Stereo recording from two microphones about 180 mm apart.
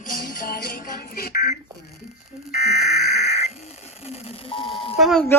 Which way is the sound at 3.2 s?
35° left (ahead or behind).